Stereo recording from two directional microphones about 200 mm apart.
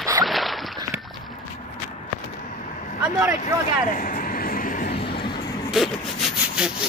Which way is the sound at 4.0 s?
40° left (ahead or behind).